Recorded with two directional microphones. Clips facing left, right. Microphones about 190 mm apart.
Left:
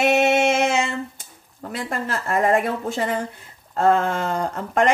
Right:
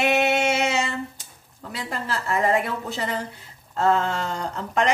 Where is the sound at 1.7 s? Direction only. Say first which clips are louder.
Left 3 dB; 50° left (ahead or behind).